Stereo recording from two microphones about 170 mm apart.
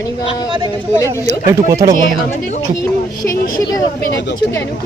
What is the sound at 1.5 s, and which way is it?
Speech, 20° right (ahead or behind).